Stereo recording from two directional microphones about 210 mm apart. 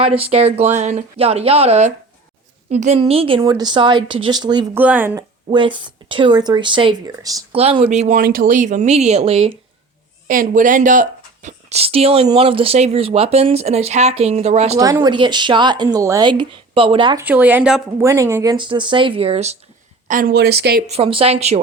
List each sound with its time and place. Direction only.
0.0 s a woman's voice: 25° right (ahead or behind)
4.8 s speech: 10° right (ahead or behind)
5.5 s speech: 25° right (ahead or behind)
10.2 s speech: 40° right (ahead or behind)
14.8 s speech: 15° right (ahead or behind)
17.2 s speech: 10° right (ahead or behind); by 19.5 s 30° right (ahead or behind)
20.1 s speech: 40° right (ahead or behind)
20.8 s speech: 30° right (ahead or behind)